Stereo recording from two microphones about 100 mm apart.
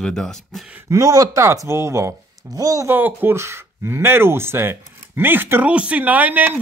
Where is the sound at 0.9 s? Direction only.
35° right (ahead or behind).